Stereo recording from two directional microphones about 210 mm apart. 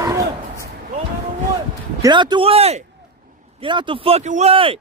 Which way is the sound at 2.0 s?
20° right (ahead or behind).